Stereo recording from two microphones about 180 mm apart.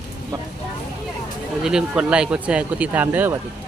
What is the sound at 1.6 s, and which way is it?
Speech, 5° right (ahead or behind).